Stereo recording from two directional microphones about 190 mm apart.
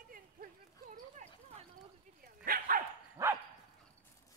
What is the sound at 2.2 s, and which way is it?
Dog, 50° right (ahead or behind).